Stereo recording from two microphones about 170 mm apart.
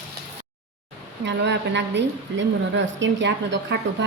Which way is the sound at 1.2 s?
90° right.